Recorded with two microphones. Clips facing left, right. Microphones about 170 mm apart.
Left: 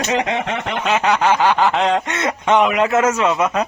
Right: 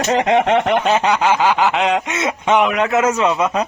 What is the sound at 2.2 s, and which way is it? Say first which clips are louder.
Speech: even; 15° right (ahead or behind).